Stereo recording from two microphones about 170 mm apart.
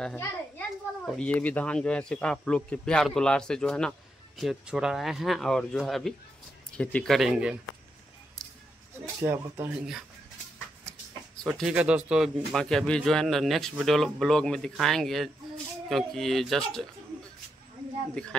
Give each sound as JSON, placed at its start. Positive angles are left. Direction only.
{"t": 0.2, "sound": "a child's voice", "side_deg": 5}
{"t": 9.2, "sound": "speech", "side_deg": -15}
{"t": 10.9, "sound": "a child's voice", "side_deg": 5}
{"t": 18.2, "sound": "a child's voice", "side_deg": 5}